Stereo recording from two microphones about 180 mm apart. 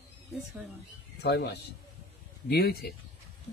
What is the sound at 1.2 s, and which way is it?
A man's voice, 65° left (ahead or behind).